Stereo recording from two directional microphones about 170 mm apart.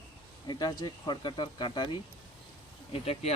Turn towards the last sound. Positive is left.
turn(degrees=35)  # may be behind; listen again after turning